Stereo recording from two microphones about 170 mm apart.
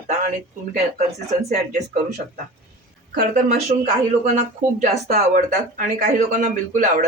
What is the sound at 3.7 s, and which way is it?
Speech, 40° right (ahead or behind).